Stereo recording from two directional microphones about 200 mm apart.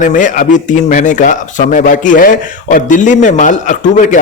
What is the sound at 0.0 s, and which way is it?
A man's voice, 40° left (ahead or behind).